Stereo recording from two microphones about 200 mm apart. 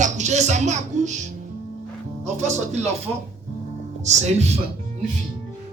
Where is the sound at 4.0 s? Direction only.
35° right (ahead or behind).